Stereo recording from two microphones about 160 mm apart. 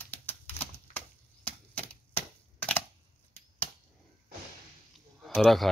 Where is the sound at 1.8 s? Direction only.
10° left (ahead or behind).